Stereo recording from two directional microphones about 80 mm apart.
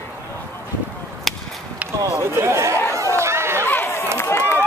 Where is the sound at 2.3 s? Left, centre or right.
Right.